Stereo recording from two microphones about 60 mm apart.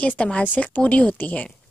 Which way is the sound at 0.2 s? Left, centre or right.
Left.